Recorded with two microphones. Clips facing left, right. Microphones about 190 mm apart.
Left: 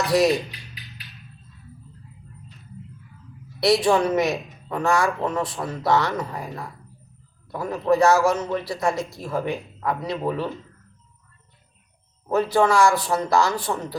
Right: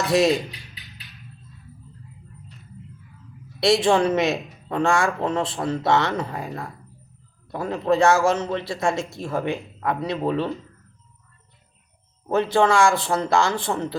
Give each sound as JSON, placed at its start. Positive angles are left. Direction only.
{"t": 0.1, "sound": "mechanisms", "side_deg": -25}
{"t": 3.6, "sound": "speech", "side_deg": -25}
{"t": 12.3, "sound": "speech", "side_deg": -25}